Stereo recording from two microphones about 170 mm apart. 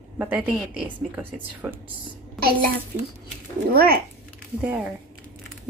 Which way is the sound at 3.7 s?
60° right (ahead or behind).